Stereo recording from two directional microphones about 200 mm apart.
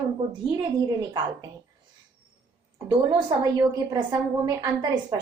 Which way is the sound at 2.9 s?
20° right (ahead or behind).